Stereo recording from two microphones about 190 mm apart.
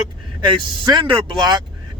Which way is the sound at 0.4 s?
25° right (ahead or behind).